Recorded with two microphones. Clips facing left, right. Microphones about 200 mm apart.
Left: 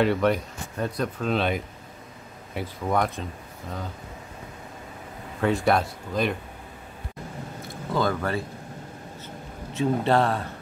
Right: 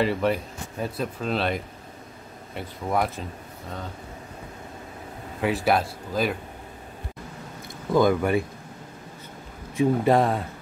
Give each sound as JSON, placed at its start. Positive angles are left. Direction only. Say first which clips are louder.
{"t": 0.0, "sound": "speech", "louder": "left 2 dB", "side_deg": -5}
{"t": 5.4, "sound": "speech", "louder": "left 1 dB", "side_deg": -5}
{"t": 7.9, "sound": "speech", "louder": "right 5 dB", "side_deg": -15}
{"t": 10.0, "sound": "speech", "louder": "even", "side_deg": -15}